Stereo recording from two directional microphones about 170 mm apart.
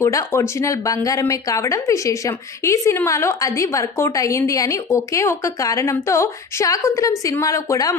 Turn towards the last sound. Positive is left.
turn(degrees=20)  # may be behind; listen again after turning